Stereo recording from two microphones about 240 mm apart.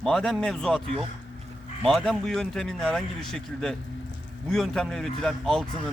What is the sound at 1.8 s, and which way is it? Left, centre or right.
Speech, centre.